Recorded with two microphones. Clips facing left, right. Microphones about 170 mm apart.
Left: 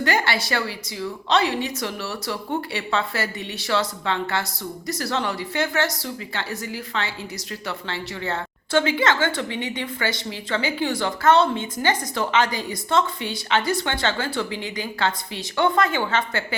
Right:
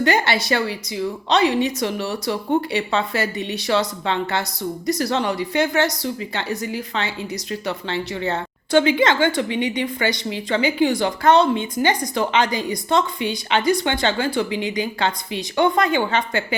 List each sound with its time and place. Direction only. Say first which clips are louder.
0.0 s a woman's voice: right 4 dB; 20° right (ahead or behind)